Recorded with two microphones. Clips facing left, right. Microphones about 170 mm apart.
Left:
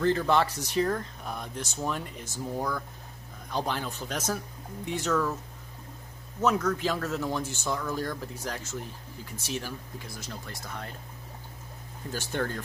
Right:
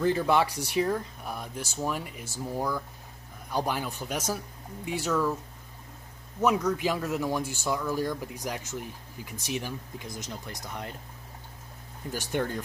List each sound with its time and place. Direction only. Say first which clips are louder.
0.0 s speech: even; 10° right (ahead or behind)
6.4 s speech: right 1 dB; 10° right (ahead or behind)
12.1 s speech: right 1 dB; 15° right (ahead or behind)